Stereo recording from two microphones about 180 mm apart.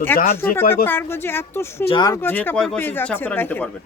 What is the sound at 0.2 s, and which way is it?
Speech, 55° left (ahead or behind).